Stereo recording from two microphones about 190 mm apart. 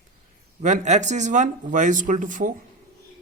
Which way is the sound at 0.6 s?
40° right (ahead or behind).